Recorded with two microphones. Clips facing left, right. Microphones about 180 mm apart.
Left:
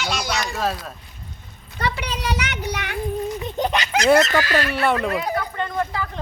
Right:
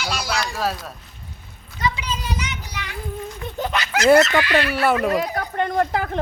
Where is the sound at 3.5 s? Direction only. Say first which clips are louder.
Left 1 dB; 20° left (ahead or behind).